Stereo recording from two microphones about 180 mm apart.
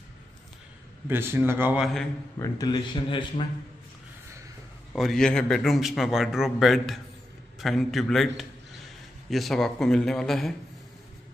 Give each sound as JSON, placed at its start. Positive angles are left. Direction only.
{"t": 1.0, "sound": "a man's voice", "side_deg": -15}
{"t": 2.3, "sound": "speech", "side_deg": 20}
{"t": 4.9, "sound": "a man's voice", "side_deg": 0}